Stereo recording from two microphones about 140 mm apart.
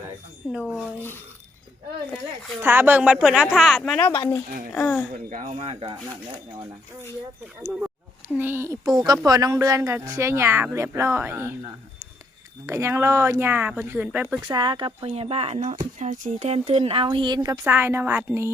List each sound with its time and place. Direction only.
0.5 s a woman's voice: 5° right (ahead or behind)
2.6 s a woman's voice: 15° right (ahead or behind)
3.9 s speech: 15° left (ahead or behind)
5.3 s speech: 70° right (ahead or behind)
5.5 s speech: 40° right (ahead or behind)
7.6 s speech: 5° right (ahead or behind)
12.6 s speech: 20° right (ahead or behind)
14.4 s speech: 30° right (ahead or behind); by 16.5 s 65° right (ahead or behind)
16.5 s speech: 45° right (ahead or behind); by 17.6 s 30° right (ahead or behind)
17.6 s speech: 15° right (ahead or behind)